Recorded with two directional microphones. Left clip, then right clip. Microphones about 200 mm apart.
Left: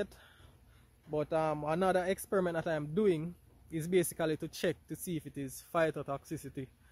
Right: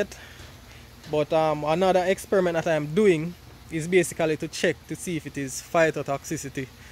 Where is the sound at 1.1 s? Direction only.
20° left (ahead or behind).